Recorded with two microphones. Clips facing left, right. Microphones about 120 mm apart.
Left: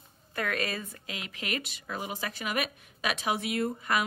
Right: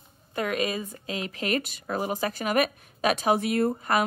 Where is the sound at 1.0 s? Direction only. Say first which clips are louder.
Right 8 dB; 35° right (ahead or behind).